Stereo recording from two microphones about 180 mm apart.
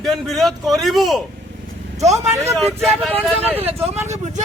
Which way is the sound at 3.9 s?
40° right (ahead or behind).